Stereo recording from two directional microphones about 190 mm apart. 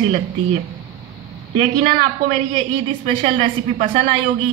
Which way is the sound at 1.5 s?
35° right (ahead or behind).